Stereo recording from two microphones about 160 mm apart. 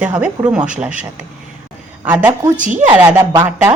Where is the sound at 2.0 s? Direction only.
10° right (ahead or behind).